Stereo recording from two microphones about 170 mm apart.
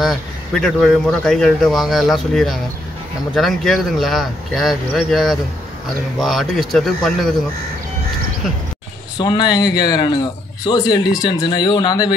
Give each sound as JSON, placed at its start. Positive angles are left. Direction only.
{"t": 0.0, "sound": "a man's voice", "side_deg": 0}
{"t": 9.2, "sound": "a man's voice", "side_deg": 25}